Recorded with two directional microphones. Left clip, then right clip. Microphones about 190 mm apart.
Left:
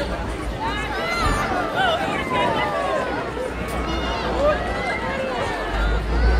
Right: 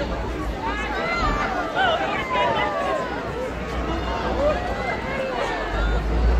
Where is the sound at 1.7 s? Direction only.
55° left (ahead or behind).